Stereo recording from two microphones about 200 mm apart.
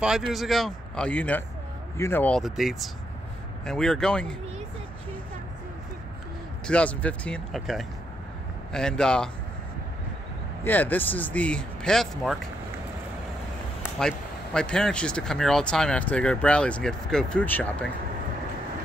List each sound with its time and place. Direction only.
0.3 s speech: centre (ahead or behind)
6.7 s speech: 5° left (ahead or behind)
10.6 s speech: 10° left (ahead or behind)
13.9 s speech: 5° left (ahead or behind)